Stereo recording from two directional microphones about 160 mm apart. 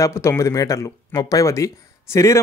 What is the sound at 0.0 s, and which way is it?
Speech, 15° left (ahead or behind).